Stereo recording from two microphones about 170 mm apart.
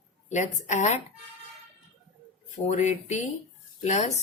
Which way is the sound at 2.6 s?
40° left (ahead or behind).